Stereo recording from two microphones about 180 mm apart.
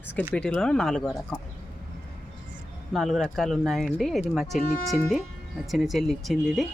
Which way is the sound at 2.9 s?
Centre (ahead or behind).